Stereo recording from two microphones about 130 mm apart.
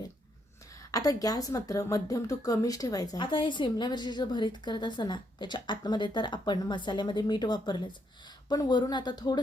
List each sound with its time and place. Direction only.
0.7 s a woman's voice: 25° left (ahead or behind)